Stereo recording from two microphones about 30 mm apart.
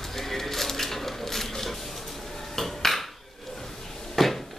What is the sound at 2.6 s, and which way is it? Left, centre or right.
Dishes, centre.